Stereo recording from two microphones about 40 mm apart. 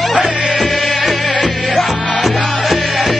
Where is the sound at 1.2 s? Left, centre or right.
Centre.